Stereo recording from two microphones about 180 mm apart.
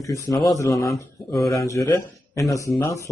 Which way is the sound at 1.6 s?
20° left (ahead or behind).